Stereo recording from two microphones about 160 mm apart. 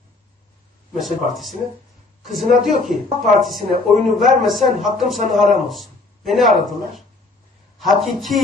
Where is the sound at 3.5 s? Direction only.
55° right (ahead or behind).